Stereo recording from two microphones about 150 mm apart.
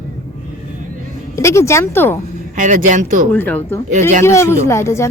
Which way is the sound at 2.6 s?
60° right (ahead or behind).